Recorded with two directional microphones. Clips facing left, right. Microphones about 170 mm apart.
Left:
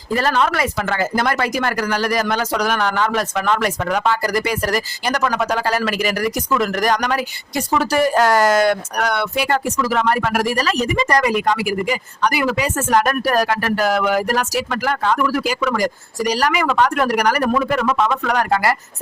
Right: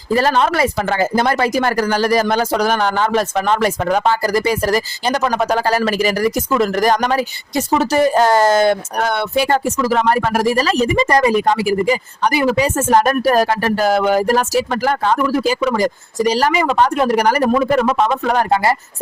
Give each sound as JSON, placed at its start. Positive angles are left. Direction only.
{"t": 0.1, "sound": "speech", "side_deg": -30}